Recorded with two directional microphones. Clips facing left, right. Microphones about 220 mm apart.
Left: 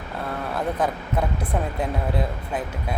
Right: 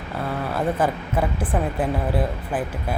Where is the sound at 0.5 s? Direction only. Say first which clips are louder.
Right 2 dB; 5° right (ahead or behind).